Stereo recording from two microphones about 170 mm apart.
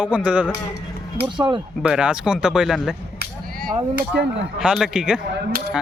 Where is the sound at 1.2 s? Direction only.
30° right (ahead or behind).